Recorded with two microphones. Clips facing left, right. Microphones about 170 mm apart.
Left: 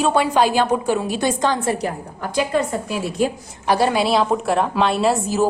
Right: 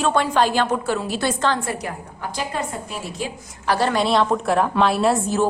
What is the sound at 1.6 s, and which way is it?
Speech, 30° left (ahead or behind).